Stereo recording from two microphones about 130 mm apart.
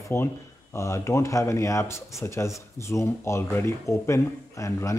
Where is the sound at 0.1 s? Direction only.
20° left (ahead or behind).